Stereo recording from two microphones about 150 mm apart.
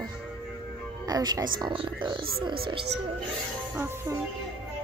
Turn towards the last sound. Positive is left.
turn(degrees=-20)  # may be behind; listen again after turning